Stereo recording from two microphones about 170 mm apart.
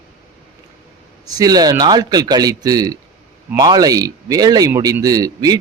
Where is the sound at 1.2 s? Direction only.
20° right (ahead or behind).